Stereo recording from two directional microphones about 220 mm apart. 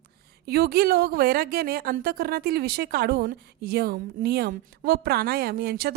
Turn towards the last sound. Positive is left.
turn(degrees=-45)  # may be behind; listen again after turning